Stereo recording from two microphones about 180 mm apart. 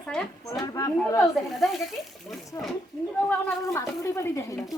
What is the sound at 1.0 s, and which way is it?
Speech, 5° left (ahead or behind).